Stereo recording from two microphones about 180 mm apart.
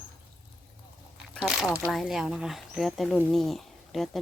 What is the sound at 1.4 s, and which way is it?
Speech, 5° right (ahead or behind).